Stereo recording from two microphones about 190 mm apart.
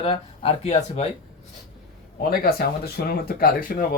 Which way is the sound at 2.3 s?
50° left (ahead or behind).